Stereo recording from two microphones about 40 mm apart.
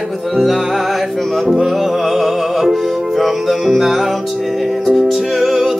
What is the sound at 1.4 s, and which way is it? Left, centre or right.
Music, centre.